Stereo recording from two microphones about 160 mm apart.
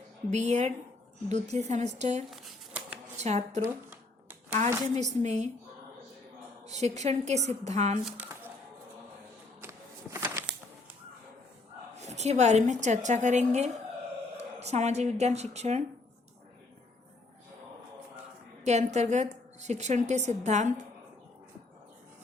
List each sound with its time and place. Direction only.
0.3 s a woman's voice: 45° right (ahead or behind)
2.3 s a sound: centre (ahead or behind)
3.2 s a woman's voice: 45° right (ahead or behind)
4.9 s a woman's voice: 45° right (ahead or behind)
6.7 s a woman's voice: 45° right (ahead or behind)
9.6 s a sound: 15° right (ahead or behind)
11.9 s a woman's voice: 45° right (ahead or behind)
18.6 s a woman's voice: 45° right (ahead or behind)